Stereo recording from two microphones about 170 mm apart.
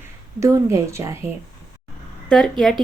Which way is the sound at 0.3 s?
20° right (ahead or behind).